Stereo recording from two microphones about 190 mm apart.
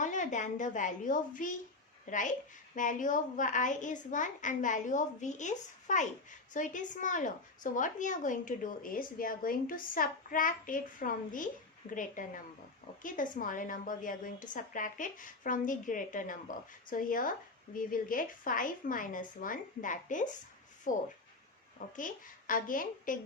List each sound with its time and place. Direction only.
0.0 s a woman's voice: 40° left (ahead or behind)